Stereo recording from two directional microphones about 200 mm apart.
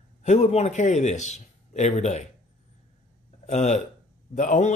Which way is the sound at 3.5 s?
35° left (ahead or behind).